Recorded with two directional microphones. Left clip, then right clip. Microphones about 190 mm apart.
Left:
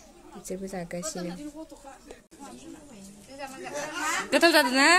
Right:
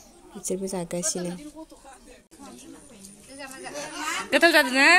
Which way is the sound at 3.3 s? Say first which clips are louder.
Even; 10° left (ahead or behind).